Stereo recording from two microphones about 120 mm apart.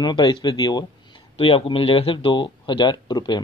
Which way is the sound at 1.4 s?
50° left (ahead or behind).